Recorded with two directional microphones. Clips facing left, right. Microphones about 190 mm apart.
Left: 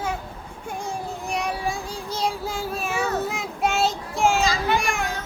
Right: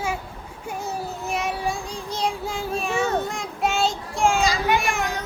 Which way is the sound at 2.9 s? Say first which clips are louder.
Right 2 dB; 25° right (ahead or behind).